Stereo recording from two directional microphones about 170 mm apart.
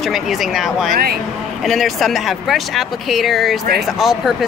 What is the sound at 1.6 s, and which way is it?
Speech, centre (ahead or behind).